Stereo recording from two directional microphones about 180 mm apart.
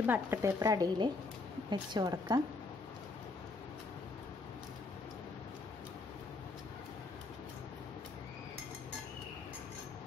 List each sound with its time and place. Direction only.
0.0 s a woman's voice: 10° right (ahead or behind)